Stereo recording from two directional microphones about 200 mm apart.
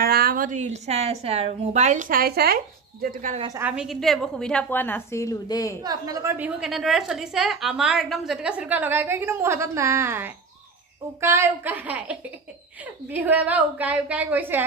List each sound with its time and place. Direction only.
0.0 s a woman's voice: 50° right (ahead or behind)
3.3 s a woman's voice: 20° right (ahead or behind)
3.6 s a woman's voice: 5° right (ahead or behind); by 5.8 s 15° left (ahead or behind)
5.8 s a woman's voice: 20° right (ahead or behind)